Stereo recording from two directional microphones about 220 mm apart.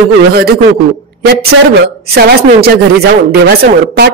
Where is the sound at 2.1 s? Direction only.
45° right (ahead or behind).